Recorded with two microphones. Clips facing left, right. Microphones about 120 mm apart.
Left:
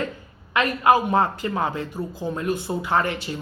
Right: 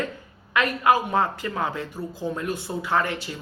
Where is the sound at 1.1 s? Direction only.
20° left (ahead or behind).